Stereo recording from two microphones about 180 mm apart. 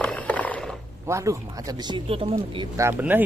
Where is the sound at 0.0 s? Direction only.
5° left (ahead or behind).